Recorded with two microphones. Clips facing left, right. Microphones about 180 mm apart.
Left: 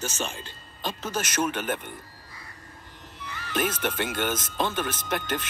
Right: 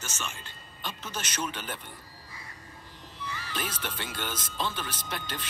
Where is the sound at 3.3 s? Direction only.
50° left (ahead or behind).